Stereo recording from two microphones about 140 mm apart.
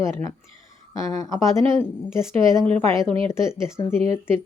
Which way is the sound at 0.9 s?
25° left (ahead or behind).